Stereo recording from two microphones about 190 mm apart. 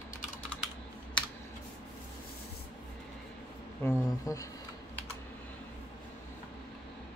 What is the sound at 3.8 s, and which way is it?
Speech, 15° left (ahead or behind).